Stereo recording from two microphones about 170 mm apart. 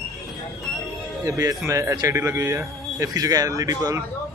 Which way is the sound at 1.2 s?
20° right (ahead or behind).